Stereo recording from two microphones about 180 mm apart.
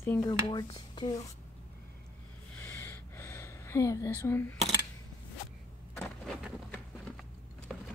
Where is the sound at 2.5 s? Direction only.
15° left (ahead or behind).